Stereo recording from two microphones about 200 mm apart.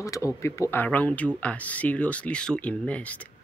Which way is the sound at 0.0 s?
15° left (ahead or behind).